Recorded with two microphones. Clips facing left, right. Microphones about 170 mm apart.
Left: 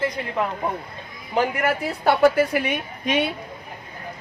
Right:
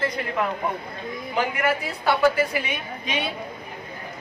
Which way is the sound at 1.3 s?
45° left (ahead or behind).